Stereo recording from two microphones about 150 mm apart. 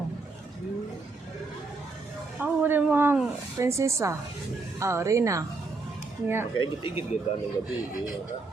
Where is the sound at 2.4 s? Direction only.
15° right (ahead or behind).